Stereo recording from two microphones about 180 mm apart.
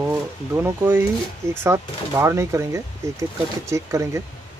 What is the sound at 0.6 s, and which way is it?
Speech, 15° right (ahead or behind).